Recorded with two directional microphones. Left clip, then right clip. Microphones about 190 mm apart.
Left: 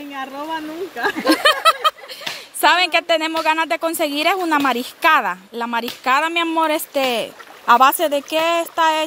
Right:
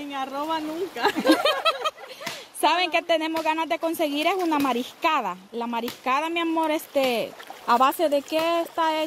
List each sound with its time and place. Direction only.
0.2 s speech: 20° left (ahead or behind)
1.4 s a sound: centre (ahead or behind)
2.6 s a woman's voice: centre (ahead or behind)